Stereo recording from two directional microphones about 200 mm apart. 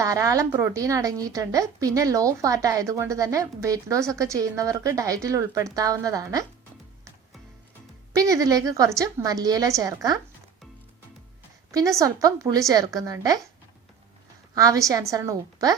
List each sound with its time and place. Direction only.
0.0 s a woman's voice: 15° right (ahead or behind)
8.2 s a woman's voice: 15° right (ahead or behind)
11.7 s a woman's voice: 15° right (ahead or behind)
14.5 s a woman's voice: 15° right (ahead or behind)